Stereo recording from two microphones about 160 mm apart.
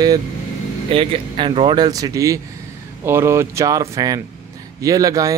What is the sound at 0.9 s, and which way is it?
Speech, 35° right (ahead or behind).